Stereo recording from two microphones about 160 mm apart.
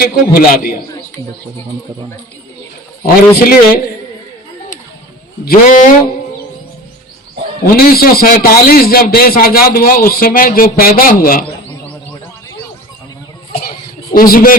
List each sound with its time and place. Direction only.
0.0 s a man's voice: 65° left (ahead or behind)
3.0 s a man's voice: 65° left (ahead or behind)
5.5 s a man's voice: 60° left (ahead or behind)
7.6 s a man's voice: 70° left (ahead or behind)
13.6 s a sound: 65° left (ahead or behind)